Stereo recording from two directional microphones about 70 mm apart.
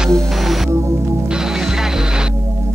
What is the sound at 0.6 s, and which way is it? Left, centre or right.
Music, right.